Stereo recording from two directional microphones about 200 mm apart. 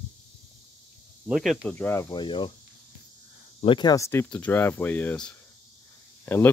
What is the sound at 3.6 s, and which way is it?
Speech, 25° left (ahead or behind).